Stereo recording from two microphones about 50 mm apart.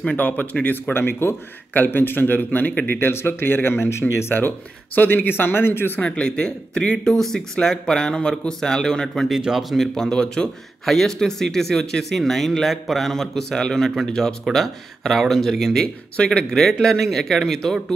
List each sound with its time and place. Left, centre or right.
0.0 s a man's voice: left
0.9 s speech: left
1.7 s a man's voice: left
3.0 s speech: left
4.4 s speech: left
6.0 s speech: centre
9.4 s speech: centre
9.8 s speech: centre